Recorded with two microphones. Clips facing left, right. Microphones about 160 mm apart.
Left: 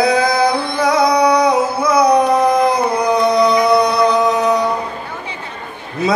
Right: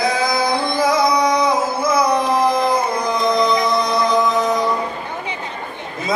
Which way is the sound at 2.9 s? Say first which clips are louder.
Left 4 dB; 70° left (ahead or behind).